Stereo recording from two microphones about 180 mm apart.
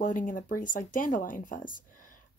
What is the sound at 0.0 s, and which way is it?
Speech, 45° left (ahead or behind).